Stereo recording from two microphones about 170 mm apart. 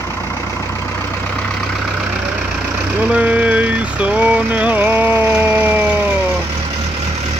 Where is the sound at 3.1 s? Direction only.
10° right (ahead or behind).